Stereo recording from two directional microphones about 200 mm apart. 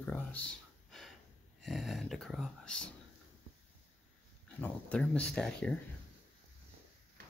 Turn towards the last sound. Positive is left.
turn(degrees=5)  # may be behind; listen again after turning